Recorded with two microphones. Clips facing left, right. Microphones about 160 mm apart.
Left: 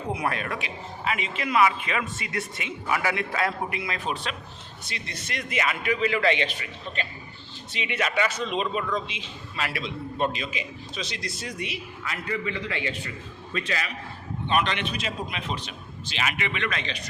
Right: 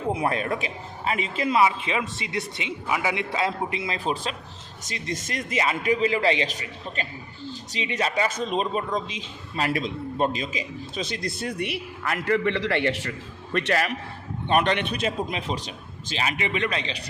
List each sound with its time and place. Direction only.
0.1 s speech: 30° right (ahead or behind)
4.8 s a man's voice: 45° right (ahead or behind)
7.7 s a man's voice: 35° right (ahead or behind); by 13.1 s 80° right
13.1 s a man's voice: 60° right (ahead or behind)
14.4 s a man's voice: 50° right (ahead or behind); by 17.0 s 30° right (ahead or behind)